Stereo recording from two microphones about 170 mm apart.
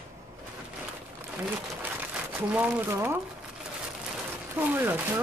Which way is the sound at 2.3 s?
5° right (ahead or behind).